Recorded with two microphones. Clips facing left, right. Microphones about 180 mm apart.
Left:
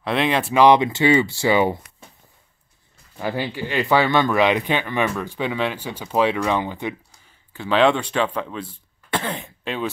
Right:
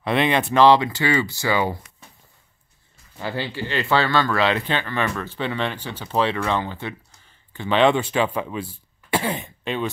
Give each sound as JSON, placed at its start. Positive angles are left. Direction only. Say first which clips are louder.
{"t": 0.0, "sound": "speech", "louder": "right 1 dB", "side_deg": 0}
{"t": 0.6, "sound": "speech", "louder": "left 1 dB", "side_deg": 20}
{"t": 3.2, "sound": "speech", "louder": "left 2 dB", "side_deg": 15}
{"t": 7.5, "sound": "speech", "louder": "even", "side_deg": 0}